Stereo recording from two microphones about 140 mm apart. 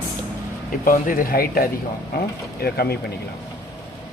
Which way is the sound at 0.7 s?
75° left (ahead or behind).